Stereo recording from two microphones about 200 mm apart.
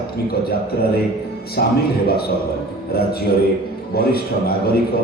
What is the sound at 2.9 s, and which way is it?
A man's voice, 50° left (ahead or behind).